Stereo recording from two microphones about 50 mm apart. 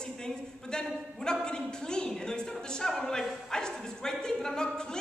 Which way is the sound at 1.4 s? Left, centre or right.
Centre.